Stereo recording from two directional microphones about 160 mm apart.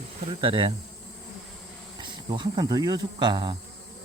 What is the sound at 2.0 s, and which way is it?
Speech, 30° right (ahead or behind).